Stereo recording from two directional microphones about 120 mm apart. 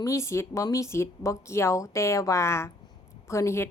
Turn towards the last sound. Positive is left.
turn(degrees=25)  # may be behind; listen again after turning